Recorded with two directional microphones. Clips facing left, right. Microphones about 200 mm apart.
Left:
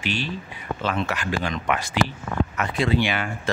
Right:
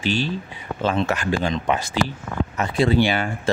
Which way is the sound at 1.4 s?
25° right (ahead or behind).